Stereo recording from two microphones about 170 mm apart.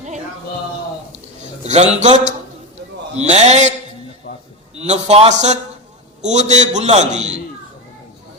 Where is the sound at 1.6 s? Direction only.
40° right (ahead or behind).